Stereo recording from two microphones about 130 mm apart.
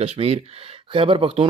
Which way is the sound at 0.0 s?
50° right (ahead or behind).